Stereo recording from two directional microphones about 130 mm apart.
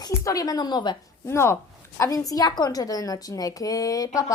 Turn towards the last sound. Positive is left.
turn(degrees=25)  # may be behind; listen again after turning